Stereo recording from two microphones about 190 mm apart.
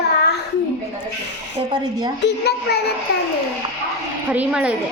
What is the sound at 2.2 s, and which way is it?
Speech, 60° left (ahead or behind).